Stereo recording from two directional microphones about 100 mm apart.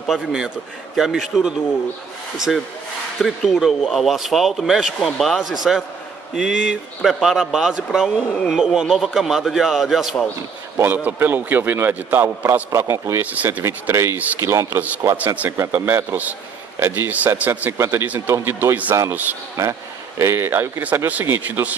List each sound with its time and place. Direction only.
0.0 s a man's voice: 5° right (ahead or behind)
11.1 s a man's voice: 20° right (ahead or behind)
14.4 s speech: 30° right (ahead or behind)
14.8 s a man's voice: 15° right (ahead or behind)
20.2 s a man's voice: 25° right (ahead or behind)